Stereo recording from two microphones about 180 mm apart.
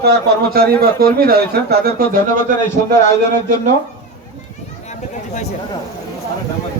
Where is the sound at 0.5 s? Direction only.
60° right (ahead or behind).